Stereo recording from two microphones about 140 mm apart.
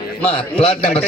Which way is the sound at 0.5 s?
40° left (ahead or behind).